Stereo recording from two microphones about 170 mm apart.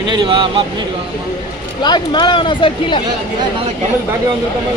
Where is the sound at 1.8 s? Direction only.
25° left (ahead or behind).